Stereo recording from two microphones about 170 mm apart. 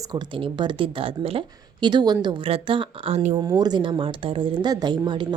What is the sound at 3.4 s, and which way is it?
Speech, 25° right (ahead or behind).